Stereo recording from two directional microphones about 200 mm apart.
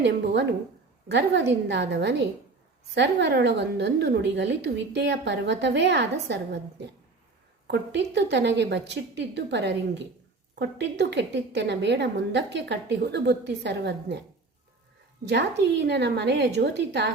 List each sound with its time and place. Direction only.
0.0 s a woman's voice: 60° right (ahead or behind)
15.2 s a woman's voice: 60° right (ahead or behind)